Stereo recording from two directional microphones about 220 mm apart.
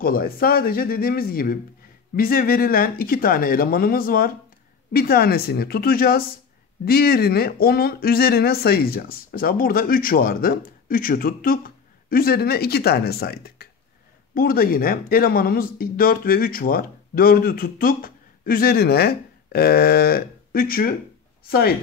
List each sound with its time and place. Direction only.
0.0 s speech: 40° left (ahead or behind)